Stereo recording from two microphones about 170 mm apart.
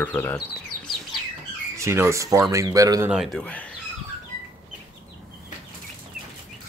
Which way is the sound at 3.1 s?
Centre (ahead or behind).